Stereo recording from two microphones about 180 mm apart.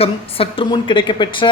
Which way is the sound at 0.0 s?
30° left (ahead or behind).